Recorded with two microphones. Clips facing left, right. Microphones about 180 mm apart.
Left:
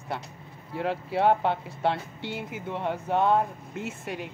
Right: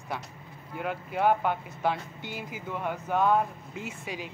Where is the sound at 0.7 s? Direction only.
30° left (ahead or behind).